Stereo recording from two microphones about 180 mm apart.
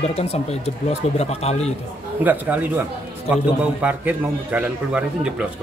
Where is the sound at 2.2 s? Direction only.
10° right (ahead or behind).